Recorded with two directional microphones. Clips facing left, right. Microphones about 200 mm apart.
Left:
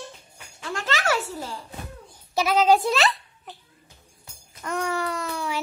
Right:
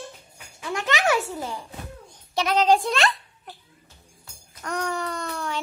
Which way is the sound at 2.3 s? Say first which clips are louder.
Left 1 dB; 5° left (ahead or behind).